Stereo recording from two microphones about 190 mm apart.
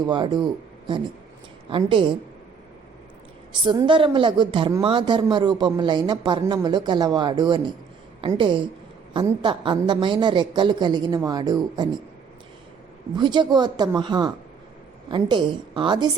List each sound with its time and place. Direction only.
0.0 s speech: 25° right (ahead or behind)
1.7 s speech: 25° right (ahead or behind)
3.6 s speech: 25° right (ahead or behind)
13.1 s speech: 25° right (ahead or behind)